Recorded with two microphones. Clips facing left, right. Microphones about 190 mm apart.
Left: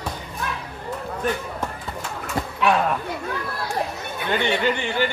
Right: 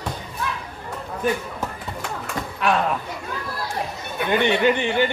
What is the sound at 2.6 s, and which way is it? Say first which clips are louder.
Speech: left 1 dB; 5° left (ahead or behind).